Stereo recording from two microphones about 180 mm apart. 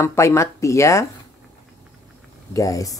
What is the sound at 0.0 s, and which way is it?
A woman's voice, 15° left (ahead or behind).